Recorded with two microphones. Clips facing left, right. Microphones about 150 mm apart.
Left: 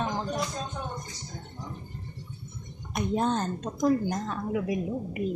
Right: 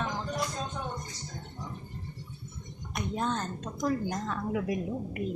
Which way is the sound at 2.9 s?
25° left (ahead or behind).